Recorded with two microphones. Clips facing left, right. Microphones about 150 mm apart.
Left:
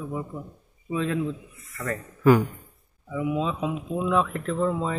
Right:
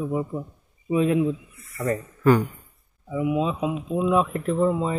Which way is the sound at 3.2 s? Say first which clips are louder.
Right 3 dB; 10° right (ahead or behind).